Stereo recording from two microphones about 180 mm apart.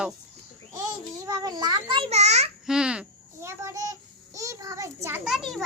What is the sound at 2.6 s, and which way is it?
Babbling, 5° right (ahead or behind).